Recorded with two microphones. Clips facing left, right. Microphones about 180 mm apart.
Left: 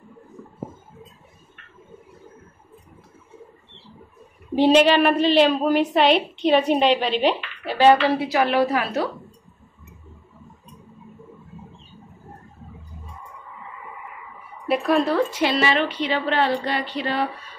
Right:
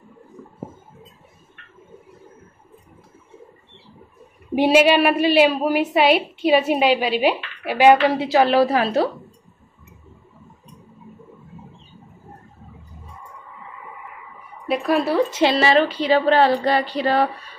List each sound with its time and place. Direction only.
4.6 s a woman's voice: 10° right (ahead or behind)
8.3 s a woman's voice: 30° right (ahead or behind)
14.7 s speech: centre (ahead or behind)
15.3 s a woman's voice: 30° right (ahead or behind)